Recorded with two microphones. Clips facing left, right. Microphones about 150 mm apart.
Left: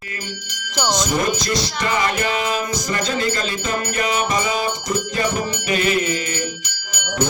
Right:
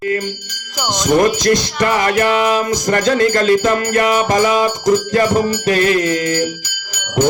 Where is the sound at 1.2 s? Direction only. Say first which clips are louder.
Right 8 dB; 75° right (ahead or behind).